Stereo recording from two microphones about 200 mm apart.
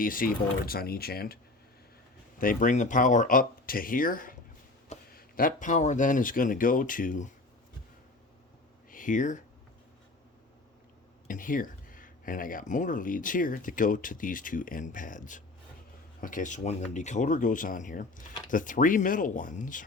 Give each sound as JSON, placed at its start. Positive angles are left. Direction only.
{"t": 0.0, "sound": "speech", "side_deg": 45}
{"t": 2.4, "sound": "speech", "side_deg": 40}
{"t": 8.9, "sound": "speech", "side_deg": 40}
{"t": 11.3, "sound": "speech", "side_deg": 45}